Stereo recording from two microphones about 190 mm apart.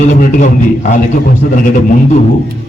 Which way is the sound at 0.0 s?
40° left (ahead or behind).